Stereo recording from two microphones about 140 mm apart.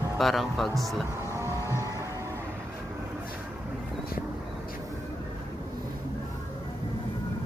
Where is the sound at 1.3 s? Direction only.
20° right (ahead or behind).